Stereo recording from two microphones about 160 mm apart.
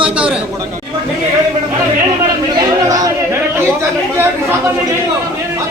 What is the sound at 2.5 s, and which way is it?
Speech, 25° right (ahead or behind).